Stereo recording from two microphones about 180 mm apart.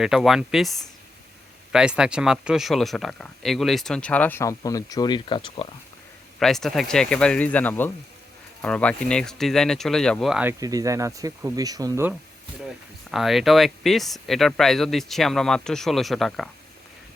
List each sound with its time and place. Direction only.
0.0 s speech: centre (ahead or behind); by 5.6 s 25° left (ahead or behind)
6.4 s speech: centre (ahead or behind)
10.6 s speech: 20° right (ahead or behind)
12.6 s speech: centre (ahead or behind)